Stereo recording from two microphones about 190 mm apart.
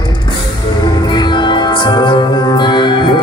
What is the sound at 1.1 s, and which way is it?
Music, 25° left (ahead or behind).